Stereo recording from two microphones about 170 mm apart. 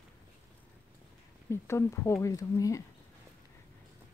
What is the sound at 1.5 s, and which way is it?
Speech, 15° left (ahead or behind).